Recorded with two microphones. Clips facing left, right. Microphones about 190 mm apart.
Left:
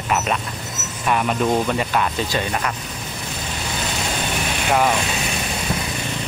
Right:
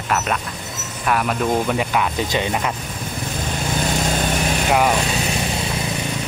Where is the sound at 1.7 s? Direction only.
10° right (ahead or behind).